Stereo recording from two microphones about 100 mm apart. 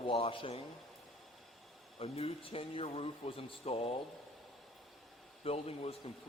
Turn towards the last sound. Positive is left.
turn(degrees=85)